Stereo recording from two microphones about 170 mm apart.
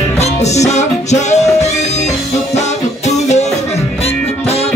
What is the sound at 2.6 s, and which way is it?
Music, 40° left (ahead or behind).